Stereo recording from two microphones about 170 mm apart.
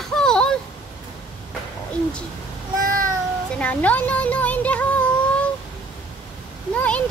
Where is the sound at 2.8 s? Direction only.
55° right (ahead or behind).